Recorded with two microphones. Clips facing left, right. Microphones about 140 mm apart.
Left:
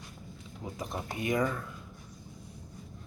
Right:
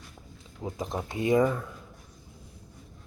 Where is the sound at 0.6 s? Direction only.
25° right (ahead or behind).